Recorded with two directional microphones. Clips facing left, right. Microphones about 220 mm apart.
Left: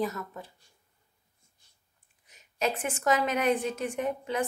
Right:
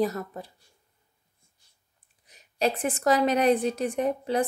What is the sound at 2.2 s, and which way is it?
A woman's voice, 35° right (ahead or behind).